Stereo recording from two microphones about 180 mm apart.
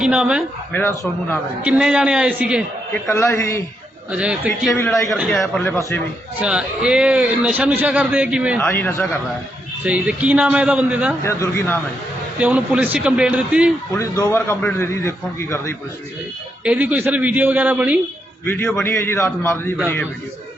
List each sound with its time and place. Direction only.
0.0 s speech: 5° right (ahead or behind)
0.7 s a man's voice: 10° left (ahead or behind)
1.6 s a man's voice: 5° right (ahead or behind)
3.1 s a man's voice: 15° left (ahead or behind)
4.1 s a man's voice: 5° right (ahead or behind)
5.4 s a man's voice: 10° left (ahead or behind)
6.4 s a man's voice: 5° right (ahead or behind)
8.6 s a man's voice: 10° left (ahead or behind)
9.8 s a man's voice: 5° right (ahead or behind)
11.2 s a man's voice: 15° left (ahead or behind)
12.4 s a man's voice: 5° right (ahead or behind)
13.9 s a man's voice: 15° left (ahead or behind)
16.6 s a man's voice: 5° right (ahead or behind)
18.4 s a man's voice: 10° left (ahead or behind)